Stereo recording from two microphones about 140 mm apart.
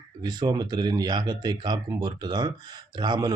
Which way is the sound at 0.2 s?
30° right (ahead or behind).